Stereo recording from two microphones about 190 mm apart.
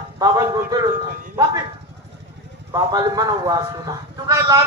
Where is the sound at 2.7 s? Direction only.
20° right (ahead or behind).